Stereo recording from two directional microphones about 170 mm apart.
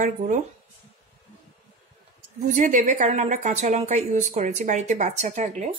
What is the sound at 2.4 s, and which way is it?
A woman's voice, 45° right (ahead or behind).